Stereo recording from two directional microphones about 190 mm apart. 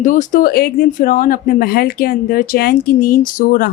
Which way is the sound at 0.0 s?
45° left (ahead or behind).